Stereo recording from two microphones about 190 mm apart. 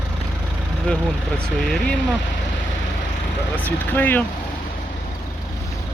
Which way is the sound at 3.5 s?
10° left (ahead or behind).